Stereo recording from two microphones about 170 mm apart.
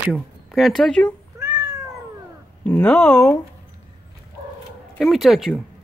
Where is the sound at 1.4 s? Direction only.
15° right (ahead or behind).